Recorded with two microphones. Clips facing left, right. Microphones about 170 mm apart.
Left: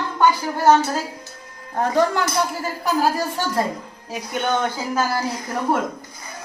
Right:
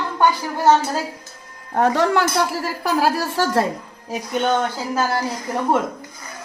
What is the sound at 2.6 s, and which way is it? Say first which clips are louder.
Speech: right 1 dB; 90° right.